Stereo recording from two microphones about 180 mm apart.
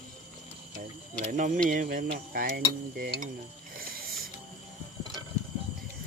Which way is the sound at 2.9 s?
55° right (ahead or behind).